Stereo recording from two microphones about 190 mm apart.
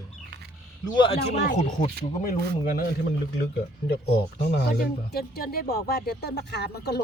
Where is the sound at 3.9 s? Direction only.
60° left (ahead or behind).